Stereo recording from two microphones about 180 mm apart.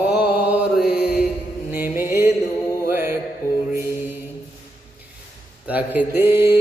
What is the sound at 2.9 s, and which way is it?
Music, 10° right (ahead or behind).